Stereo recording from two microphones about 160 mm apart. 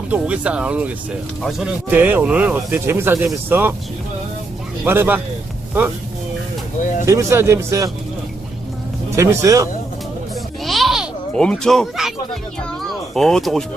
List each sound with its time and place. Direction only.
0.1 s speech: 10° right (ahead or behind)
4.9 s speech: 10° right (ahead or behind)
7.0 s speech: 20° right (ahead or behind)
9.1 s speech: 20° right (ahead or behind)
10.6 s a sound: centre (ahead or behind)
12.9 s speech: 5° left (ahead or behind)